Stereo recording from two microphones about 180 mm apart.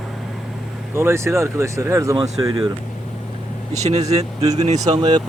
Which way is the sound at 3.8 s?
35° right (ahead or behind).